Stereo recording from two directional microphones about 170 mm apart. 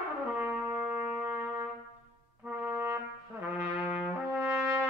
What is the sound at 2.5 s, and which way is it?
Trumpet, 10° right (ahead or behind).